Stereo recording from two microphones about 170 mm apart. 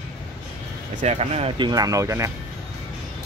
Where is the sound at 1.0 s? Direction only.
40° right (ahead or behind).